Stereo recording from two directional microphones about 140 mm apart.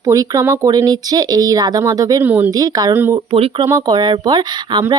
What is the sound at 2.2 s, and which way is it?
Speech, 15° right (ahead or behind).